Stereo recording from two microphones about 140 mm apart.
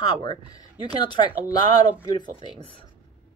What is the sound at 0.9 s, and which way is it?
Speech, 35° left (ahead or behind).